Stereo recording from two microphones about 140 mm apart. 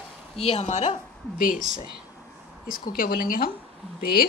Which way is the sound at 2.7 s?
90° left.